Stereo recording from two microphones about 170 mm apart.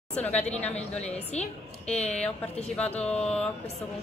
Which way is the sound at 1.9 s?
5° left (ahead or behind).